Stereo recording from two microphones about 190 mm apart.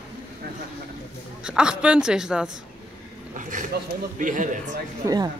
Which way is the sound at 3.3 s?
45° right (ahead or behind).